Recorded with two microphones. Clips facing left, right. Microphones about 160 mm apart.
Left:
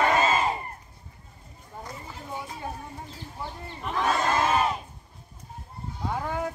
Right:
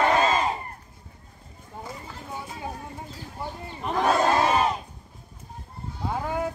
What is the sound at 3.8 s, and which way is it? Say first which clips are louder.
Crowd: right 4 dB; 35° right (ahead or behind).